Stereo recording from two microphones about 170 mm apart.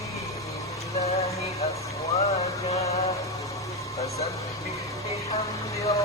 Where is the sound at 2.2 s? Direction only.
40° left (ahead or behind).